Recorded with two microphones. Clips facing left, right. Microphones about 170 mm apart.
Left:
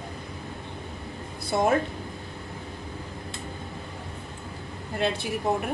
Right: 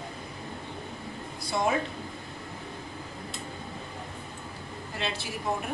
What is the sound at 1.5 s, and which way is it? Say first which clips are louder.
Speech: left 5 dB; 50° left (ahead or behind).